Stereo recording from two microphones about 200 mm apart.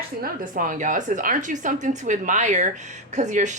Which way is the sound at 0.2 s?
45° right (ahead or behind).